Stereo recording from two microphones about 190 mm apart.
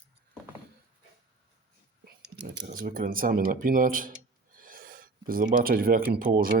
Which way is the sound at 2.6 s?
45° right (ahead or behind).